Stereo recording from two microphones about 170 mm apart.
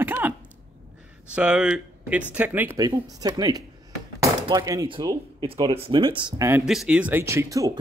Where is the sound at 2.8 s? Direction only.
20° right (ahead or behind).